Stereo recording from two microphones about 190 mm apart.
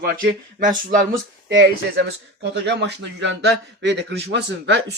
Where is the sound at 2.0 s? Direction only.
65° right (ahead or behind).